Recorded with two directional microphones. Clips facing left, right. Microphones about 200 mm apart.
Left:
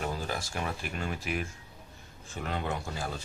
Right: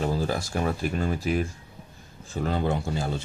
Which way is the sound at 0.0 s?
35° right (ahead or behind).